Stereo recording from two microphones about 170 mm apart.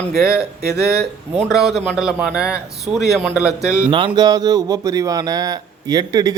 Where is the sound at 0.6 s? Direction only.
70° right (ahead or behind).